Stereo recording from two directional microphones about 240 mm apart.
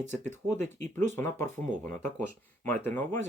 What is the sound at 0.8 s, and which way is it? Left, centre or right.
Speech, right.